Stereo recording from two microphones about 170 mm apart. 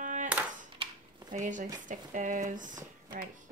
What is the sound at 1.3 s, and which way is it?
Speech, 45° right (ahead or behind).